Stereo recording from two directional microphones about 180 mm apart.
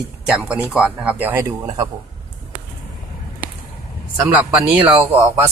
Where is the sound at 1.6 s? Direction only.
25° right (ahead or behind).